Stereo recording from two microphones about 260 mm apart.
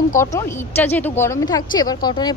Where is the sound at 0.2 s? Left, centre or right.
Centre.